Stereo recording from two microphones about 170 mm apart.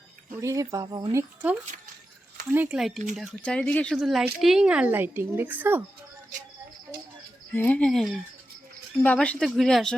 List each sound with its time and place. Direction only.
0.4 s speech: 20° right (ahead or behind)
2.5 s a woman's voice: 10° right (ahead or behind)
7.5 s speech: 10° left (ahead or behind)